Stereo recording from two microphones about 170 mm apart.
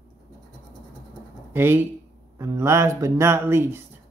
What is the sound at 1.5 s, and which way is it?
Speech, 15° right (ahead or behind).